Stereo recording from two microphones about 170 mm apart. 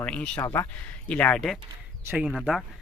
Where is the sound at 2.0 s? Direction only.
10° right (ahead or behind).